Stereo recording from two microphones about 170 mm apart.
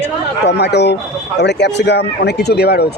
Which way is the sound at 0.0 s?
85° left.